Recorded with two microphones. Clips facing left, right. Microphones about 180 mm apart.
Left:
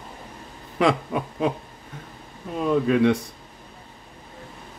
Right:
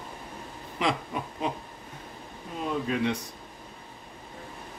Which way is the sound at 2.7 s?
60° left (ahead or behind).